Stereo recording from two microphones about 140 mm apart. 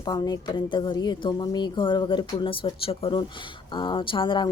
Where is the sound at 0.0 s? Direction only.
30° left (ahead or behind).